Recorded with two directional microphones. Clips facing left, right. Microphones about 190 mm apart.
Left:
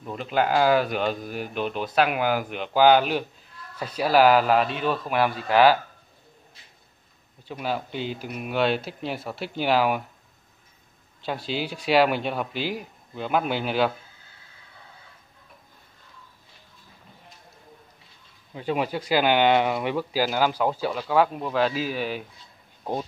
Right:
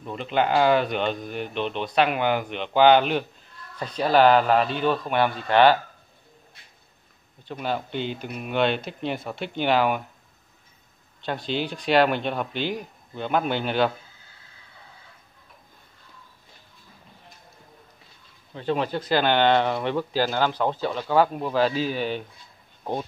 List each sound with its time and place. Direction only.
0.0 s speech: 5° left (ahead or behind)
7.4 s speech: 5° left (ahead or behind)
11.2 s speech: 5° left (ahead or behind)
18.5 s speech: 10° left (ahead or behind)